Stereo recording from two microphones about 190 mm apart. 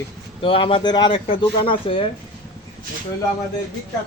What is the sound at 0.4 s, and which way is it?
Speech, 25° left (ahead or behind).